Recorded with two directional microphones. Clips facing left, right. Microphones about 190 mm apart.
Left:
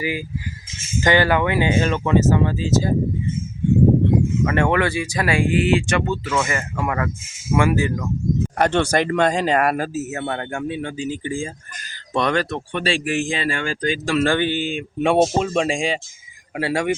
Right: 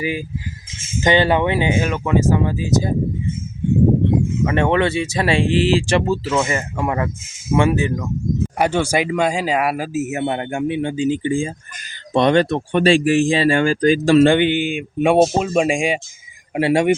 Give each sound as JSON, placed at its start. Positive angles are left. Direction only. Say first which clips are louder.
{"t": 0.0, "sound": "speech", "louder": "right 2 dB", "side_deg": -20}
{"t": 4.4, "sound": "speech", "louder": "right 5 dB", "side_deg": -20}
{"t": 8.5, "sound": "speech", "louder": "even", "side_deg": -10}
{"t": 12.7, "sound": "speech", "louder": "right 8 dB", "side_deg": -40}
{"t": 14.3, "sound": "speech", "louder": "right 5 dB", "side_deg": -20}